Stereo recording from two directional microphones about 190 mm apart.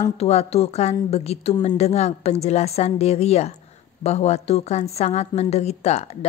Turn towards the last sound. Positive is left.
turn(degrees=35)  # may be behind; listen again after turning